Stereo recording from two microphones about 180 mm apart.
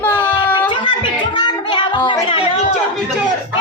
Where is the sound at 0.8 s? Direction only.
25° left (ahead or behind).